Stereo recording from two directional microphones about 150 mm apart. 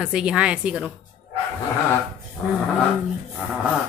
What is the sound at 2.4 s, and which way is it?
Speech, 15° left (ahead or behind).